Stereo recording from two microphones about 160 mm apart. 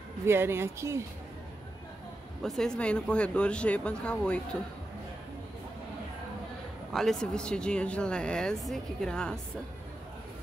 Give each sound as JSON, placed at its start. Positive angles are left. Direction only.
{"t": 0.3, "sound": "speech", "side_deg": -15}
{"t": 2.4, "sound": "speech", "side_deg": 0}
{"t": 6.9, "sound": "speech", "side_deg": 0}